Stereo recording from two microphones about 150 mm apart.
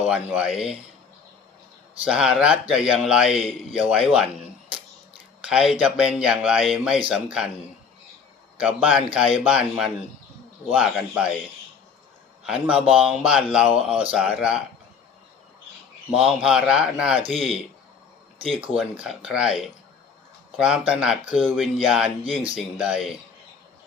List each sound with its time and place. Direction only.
0.0 s speech: 5° right (ahead or behind)
2.0 s speech: 5° right (ahead or behind)
8.5 s speech: 10° right (ahead or behind)
12.5 s speech: 5° right (ahead or behind)
16.0 s speech: 5° right (ahead or behind)
18.5 s speech: 35° right (ahead or behind)
19.0 s speech: 5° right (ahead or behind)